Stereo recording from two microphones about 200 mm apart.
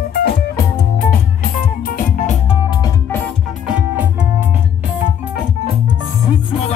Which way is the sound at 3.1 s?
10° left (ahead or behind).